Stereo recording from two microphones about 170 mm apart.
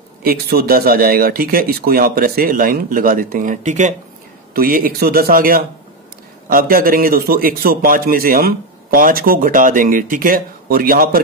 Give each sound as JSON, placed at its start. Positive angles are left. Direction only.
{"t": 0.2, "sound": "a man's voice", "side_deg": -65}
{"t": 4.6, "sound": "a man's voice", "side_deg": -55}